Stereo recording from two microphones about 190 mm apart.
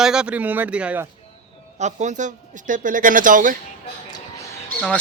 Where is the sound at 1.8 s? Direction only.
40° right (ahead or behind).